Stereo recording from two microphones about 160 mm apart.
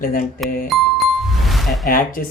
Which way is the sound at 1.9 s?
60° left (ahead or behind).